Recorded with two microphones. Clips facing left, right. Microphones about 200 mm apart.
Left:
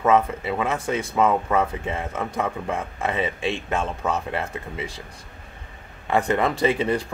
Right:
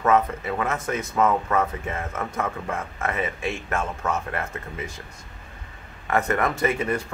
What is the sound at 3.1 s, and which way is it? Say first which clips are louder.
Speech: left 2 dB; 30° left (ahead or behind).